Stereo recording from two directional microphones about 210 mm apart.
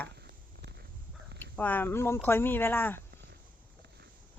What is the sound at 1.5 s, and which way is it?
Speech, 10° left (ahead or behind).